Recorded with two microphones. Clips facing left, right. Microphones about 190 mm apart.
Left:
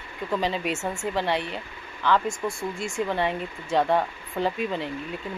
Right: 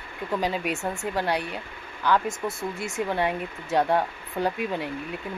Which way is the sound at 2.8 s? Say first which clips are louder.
Left 1 dB; 20° right (ahead or behind).